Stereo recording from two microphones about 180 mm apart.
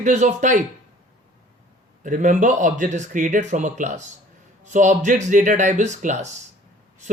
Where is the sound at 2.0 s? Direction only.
45° right (ahead or behind).